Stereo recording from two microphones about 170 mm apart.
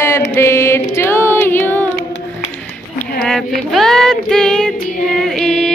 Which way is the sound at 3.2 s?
Centre (ahead or behind).